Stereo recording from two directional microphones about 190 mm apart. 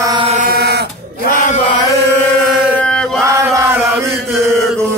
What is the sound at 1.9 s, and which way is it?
Chant, 15° left (ahead or behind).